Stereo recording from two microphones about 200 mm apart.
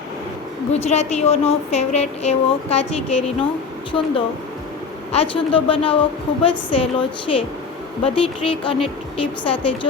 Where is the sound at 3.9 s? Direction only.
25° left (ahead or behind).